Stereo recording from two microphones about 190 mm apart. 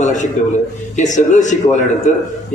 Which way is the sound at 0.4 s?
40° left (ahead or behind).